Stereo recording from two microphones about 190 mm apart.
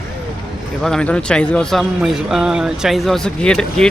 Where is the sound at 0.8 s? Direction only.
5° left (ahead or behind).